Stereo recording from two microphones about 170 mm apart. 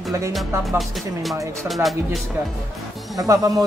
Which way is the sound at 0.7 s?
Centre (ahead or behind).